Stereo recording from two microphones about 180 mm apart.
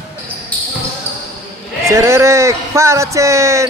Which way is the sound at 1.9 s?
15° right (ahead or behind).